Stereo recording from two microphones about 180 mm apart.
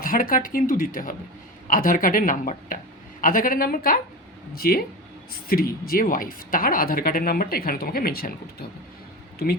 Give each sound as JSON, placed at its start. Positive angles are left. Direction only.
{"t": 0.0, "sound": "a woman's voice", "side_deg": 50}
{"t": 9.4, "sound": "speech", "side_deg": 55}